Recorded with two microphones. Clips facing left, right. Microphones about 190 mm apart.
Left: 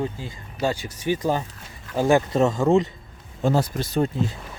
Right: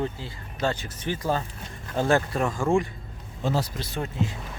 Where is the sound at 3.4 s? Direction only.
50° left (ahead or behind).